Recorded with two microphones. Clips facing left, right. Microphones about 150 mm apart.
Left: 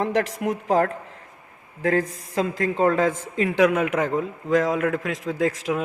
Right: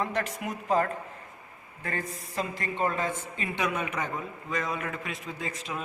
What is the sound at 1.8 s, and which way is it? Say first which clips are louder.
A man's voice: left 13 dB; 90° left.